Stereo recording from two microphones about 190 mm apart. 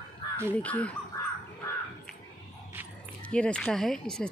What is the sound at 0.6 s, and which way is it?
Speech, 5° left (ahead or behind).